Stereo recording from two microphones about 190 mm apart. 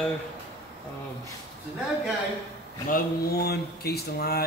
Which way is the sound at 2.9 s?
55° left (ahead or behind).